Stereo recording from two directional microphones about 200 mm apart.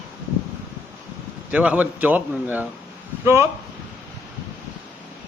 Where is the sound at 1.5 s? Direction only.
5° right (ahead or behind).